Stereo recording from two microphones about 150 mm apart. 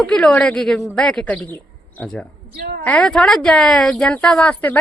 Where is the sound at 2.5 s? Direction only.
80° right.